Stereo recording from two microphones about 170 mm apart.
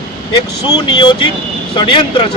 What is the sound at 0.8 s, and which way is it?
Speech, 30° left (ahead or behind).